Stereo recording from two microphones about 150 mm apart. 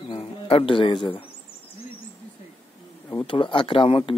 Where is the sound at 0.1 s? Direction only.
40° left (ahead or behind).